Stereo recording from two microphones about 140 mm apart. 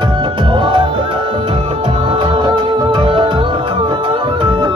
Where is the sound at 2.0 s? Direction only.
40° right (ahead or behind).